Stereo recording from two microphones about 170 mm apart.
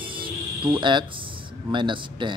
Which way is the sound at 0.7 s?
30° right (ahead or behind).